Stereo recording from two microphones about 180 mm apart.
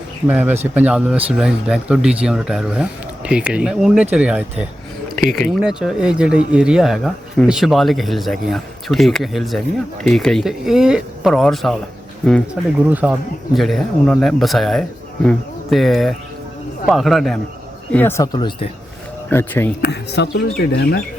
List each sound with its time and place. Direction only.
0.3 s speech: 10° right (ahead or behind)
12.9 s speech: 10° right (ahead or behind)
17.9 s speech: 15° left (ahead or behind)
19.3 s speech: 15° left (ahead or behind)
19.8 s speech: 70° left (ahead or behind)